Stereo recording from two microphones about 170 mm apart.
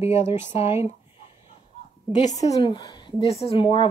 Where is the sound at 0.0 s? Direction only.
40° left (ahead or behind).